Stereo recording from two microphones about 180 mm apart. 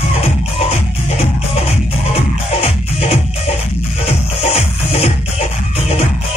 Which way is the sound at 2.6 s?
35° left (ahead or behind).